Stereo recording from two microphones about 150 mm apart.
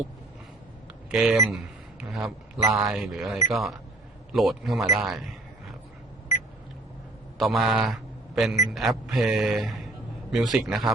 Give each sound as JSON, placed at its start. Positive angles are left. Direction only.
{"t": 1.1, "sound": "speech", "side_deg": -5}
{"t": 2.6, "sound": "speech", "side_deg": -20}
{"t": 2.9, "sound": "a man's voice", "side_deg": -5}
{"t": 7.3, "sound": "a man's voice", "side_deg": 0}